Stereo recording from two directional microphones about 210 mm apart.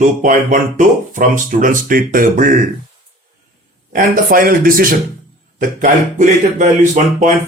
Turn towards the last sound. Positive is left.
turn(degrees=-35)  # may be behind; listen again after turning